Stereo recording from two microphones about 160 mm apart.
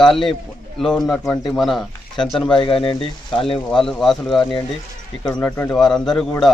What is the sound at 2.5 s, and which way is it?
Speech, 30° left (ahead or behind).